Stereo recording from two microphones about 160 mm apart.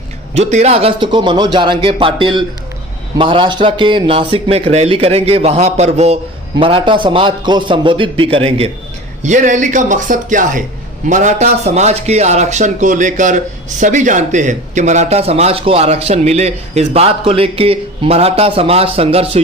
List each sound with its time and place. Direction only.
0.3 s speech: 40° right (ahead or behind)
9.2 s speech: 50° right (ahead or behind)